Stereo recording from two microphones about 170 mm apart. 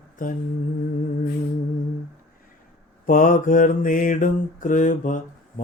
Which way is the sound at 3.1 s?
50° left (ahead or behind).